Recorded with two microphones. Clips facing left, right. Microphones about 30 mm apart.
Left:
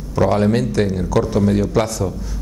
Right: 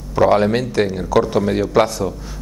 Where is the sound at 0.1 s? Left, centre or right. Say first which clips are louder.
Right 2 dB; centre.